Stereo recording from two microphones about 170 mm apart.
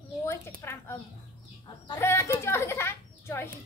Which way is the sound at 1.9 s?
15° left (ahead or behind).